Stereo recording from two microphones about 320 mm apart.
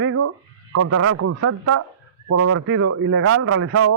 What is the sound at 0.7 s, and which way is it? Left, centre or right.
A man's voice, right.